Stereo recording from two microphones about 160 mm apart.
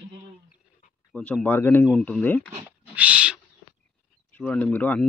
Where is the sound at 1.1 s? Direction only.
10° left (ahead or behind).